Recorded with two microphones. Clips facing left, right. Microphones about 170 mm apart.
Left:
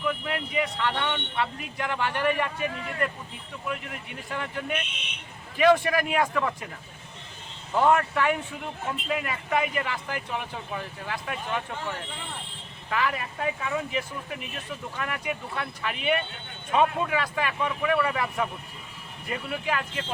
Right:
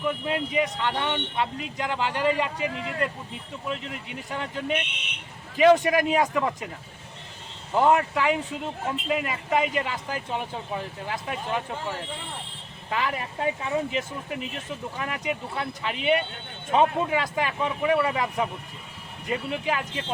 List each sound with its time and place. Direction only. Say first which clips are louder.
0.0 s speech: right 3 dB; 20° right (ahead or behind)
7.8 s speech: right 1 dB; 15° right (ahead or behind)